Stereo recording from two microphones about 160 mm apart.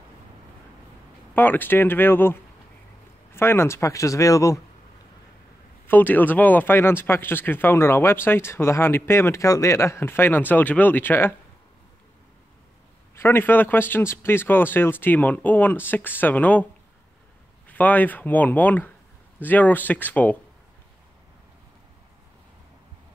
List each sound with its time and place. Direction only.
1.3 s speech: 10° left (ahead or behind)
3.3 s speech: 15° left (ahead or behind)
5.9 s speech: 10° left (ahead or behind)
13.1 s speech: 15° left (ahead or behind)
17.6 s speech: 10° left (ahead or behind)